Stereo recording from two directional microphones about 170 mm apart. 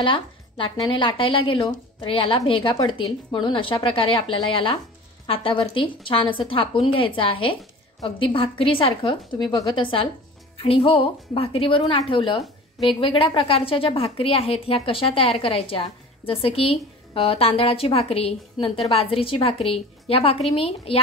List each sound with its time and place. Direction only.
0.0 s a woman's voice: 30° left (ahead or behind)